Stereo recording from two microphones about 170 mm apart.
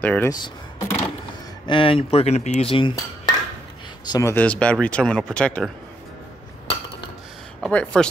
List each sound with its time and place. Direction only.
0.0 s speech: 10° left (ahead or behind)
0.3 s speech: 20° left (ahead or behind)
4.1 s speech: 15° left (ahead or behind)
7.6 s speech: 5° left (ahead or behind)